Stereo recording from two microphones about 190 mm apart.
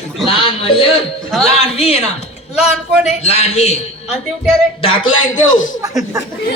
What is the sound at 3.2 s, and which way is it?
Speech, 35° left (ahead or behind).